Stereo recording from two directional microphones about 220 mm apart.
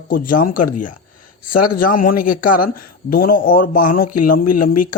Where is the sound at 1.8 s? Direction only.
40° left (ahead or behind).